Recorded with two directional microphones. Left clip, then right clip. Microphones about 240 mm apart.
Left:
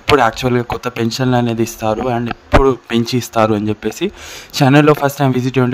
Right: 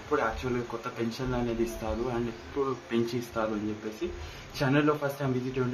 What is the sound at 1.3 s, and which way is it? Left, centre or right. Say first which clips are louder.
Speech: left 14 dB; left.